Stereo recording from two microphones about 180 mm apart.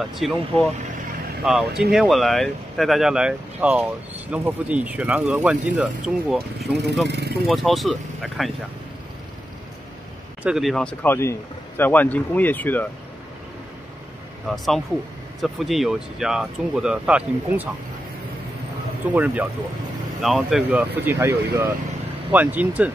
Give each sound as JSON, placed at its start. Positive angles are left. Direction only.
{"t": 0.1, "sound": "speech", "side_deg": 0}
{"t": 7.1, "sound": "speech", "side_deg": -65}
{"t": 7.4, "sound": "speech", "side_deg": 0}
{"t": 10.4, "sound": "a man's voice", "side_deg": 0}
{"t": 14.5, "sound": "speech", "side_deg": 0}
{"t": 19.0, "sound": "speech", "side_deg": -10}